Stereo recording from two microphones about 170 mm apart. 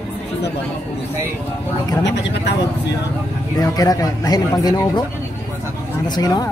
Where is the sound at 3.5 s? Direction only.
20° left (ahead or behind).